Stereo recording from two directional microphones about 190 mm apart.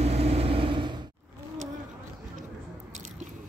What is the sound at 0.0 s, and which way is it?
Vehicle, 35° right (ahead or behind).